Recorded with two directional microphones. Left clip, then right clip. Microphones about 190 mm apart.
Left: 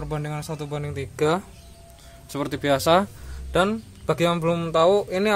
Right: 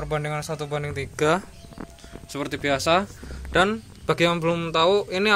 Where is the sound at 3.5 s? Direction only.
5° left (ahead or behind).